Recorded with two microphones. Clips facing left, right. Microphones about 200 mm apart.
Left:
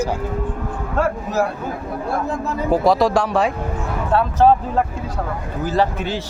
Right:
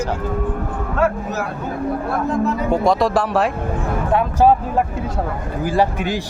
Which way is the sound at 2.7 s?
Centre (ahead or behind).